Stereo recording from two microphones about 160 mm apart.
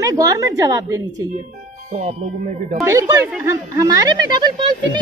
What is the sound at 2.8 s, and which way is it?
Speech, 15° right (ahead or behind).